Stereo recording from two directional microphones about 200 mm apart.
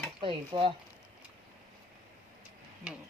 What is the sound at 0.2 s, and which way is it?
Stir, 25° right (ahead or behind).